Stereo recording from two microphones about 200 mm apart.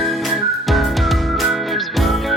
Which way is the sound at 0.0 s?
Centre (ahead or behind).